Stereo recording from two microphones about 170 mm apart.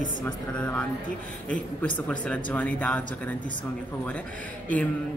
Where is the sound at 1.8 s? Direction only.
10° left (ahead or behind).